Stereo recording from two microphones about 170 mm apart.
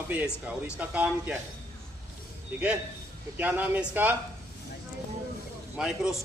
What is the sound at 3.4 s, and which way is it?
Speech, 10° right (ahead or behind).